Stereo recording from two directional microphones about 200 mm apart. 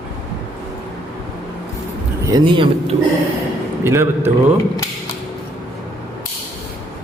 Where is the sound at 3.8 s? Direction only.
10° right (ahead or behind).